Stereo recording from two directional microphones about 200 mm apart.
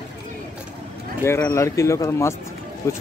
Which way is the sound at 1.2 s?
15° left (ahead or behind).